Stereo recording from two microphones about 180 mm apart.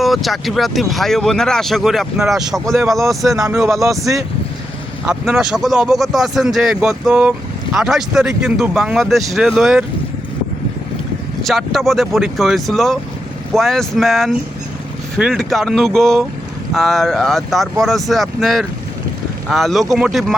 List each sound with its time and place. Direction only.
0.0 s speech: centre (ahead or behind)
3.3 s speech: 20° right (ahead or behind)
5.3 s speech: 5° right (ahead or behind)
11.4 s speech: centre (ahead or behind)